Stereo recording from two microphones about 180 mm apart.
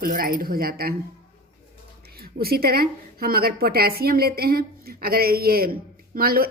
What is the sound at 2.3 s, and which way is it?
Speech, 60° right (ahead or behind).